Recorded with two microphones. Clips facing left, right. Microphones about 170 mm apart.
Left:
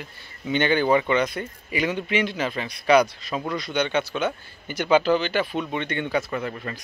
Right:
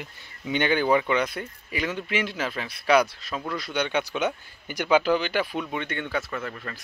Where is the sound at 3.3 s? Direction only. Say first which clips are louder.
Left 3 dB; 15° left (ahead or behind).